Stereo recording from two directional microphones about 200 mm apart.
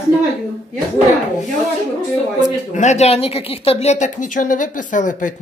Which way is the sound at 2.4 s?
35° left (ahead or behind).